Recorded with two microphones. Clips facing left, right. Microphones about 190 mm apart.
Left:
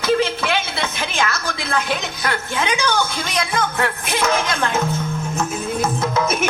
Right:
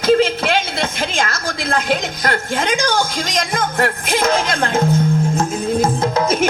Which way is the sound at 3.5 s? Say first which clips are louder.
Right 3 dB; 45° right (ahead or behind).